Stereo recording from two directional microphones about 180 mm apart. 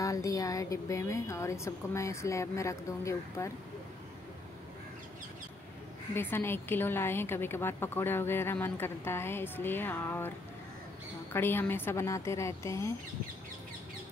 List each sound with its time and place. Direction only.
0.0 s a woman's voice: 20° left (ahead or behind)
6.1 s a woman's voice: 10° left (ahead or behind)
11.3 s a woman's voice: 10° left (ahead or behind)